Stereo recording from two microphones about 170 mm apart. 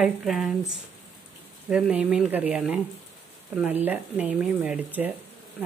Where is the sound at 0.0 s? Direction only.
Centre (ahead or behind).